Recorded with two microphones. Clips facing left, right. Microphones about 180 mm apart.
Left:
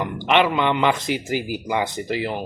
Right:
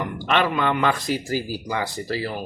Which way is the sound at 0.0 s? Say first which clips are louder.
Left 3 dB; 20° left (ahead or behind).